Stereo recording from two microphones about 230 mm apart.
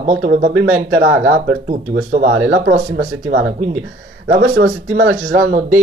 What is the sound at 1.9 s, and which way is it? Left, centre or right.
Speech, right.